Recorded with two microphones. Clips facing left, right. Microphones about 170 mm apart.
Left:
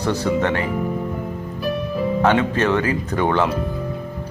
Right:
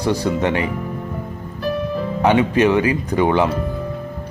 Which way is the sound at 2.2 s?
15° right (ahead or behind).